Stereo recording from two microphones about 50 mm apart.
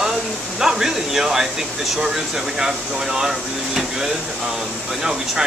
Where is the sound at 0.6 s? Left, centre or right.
Centre.